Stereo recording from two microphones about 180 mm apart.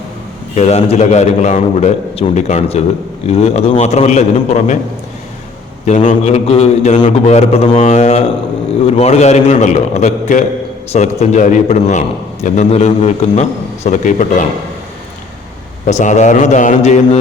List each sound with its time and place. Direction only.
0.5 s a man's voice: 35° left (ahead or behind)
6.1 s a man's voice: 40° left (ahead or behind)
15.9 s a man's voice: 40° left (ahead or behind)